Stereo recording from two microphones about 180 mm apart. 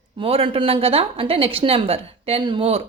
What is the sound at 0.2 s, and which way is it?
Speech, 30° right (ahead or behind).